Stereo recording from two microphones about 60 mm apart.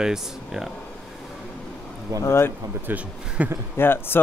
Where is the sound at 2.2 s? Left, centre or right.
Left.